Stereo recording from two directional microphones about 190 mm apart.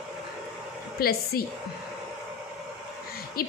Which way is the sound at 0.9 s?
55° left (ahead or behind).